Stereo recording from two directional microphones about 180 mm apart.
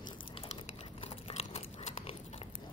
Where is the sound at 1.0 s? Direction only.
35° left (ahead or behind).